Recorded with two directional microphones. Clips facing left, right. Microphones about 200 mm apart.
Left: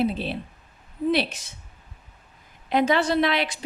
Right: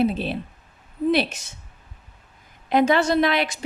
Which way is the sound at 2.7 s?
45° right (ahead or behind).